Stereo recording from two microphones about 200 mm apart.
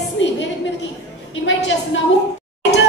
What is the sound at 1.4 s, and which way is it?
Speech, 70° left (ahead or behind).